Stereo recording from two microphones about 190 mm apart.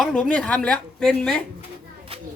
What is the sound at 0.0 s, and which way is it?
Speech, 5° left (ahead or behind).